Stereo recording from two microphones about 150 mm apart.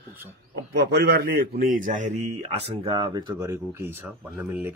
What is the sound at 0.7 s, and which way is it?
Speech, 90° right.